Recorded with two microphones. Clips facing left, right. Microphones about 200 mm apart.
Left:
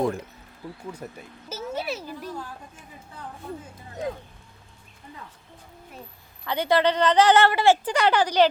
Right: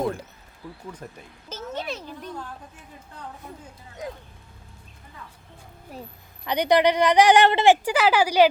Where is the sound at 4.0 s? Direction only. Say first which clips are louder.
Left 5 dB; 30° left (ahead or behind).